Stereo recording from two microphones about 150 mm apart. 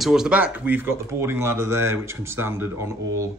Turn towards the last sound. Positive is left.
turn(degrees=-20)  # may be behind; listen again after turning